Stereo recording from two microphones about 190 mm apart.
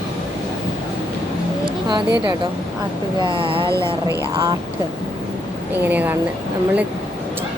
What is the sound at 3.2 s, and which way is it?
Speech, 25° right (ahead or behind).